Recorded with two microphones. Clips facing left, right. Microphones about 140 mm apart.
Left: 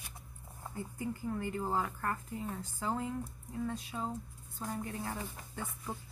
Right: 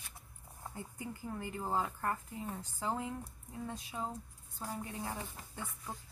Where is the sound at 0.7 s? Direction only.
20° right (ahead or behind).